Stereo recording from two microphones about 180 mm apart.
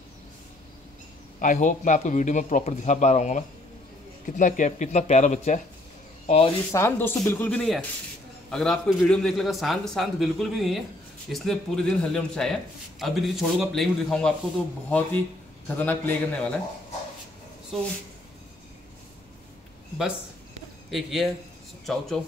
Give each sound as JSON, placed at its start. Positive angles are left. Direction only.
{"t": 1.4, "sound": "speech", "side_deg": 45}
{"t": 6.7, "sound": "a man's voice", "side_deg": 15}
{"t": 20.9, "sound": "a man's voice", "side_deg": 0}